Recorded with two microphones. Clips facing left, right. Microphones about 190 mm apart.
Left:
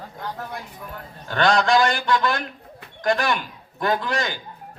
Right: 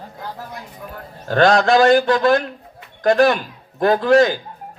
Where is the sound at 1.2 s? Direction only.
40° right (ahead or behind).